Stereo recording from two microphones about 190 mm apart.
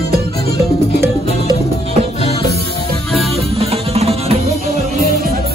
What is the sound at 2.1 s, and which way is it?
Music, 30° left (ahead or behind).